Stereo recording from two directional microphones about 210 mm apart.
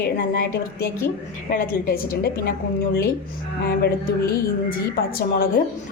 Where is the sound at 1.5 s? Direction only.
45° left (ahead or behind).